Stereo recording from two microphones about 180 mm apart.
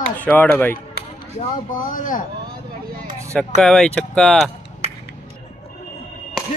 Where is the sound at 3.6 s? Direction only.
5° left (ahead or behind).